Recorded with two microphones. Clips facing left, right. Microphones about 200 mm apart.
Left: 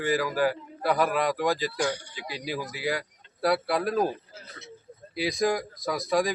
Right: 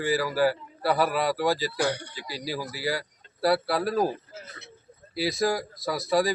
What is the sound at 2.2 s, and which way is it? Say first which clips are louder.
Speech: even; 55° left (ahead or behind).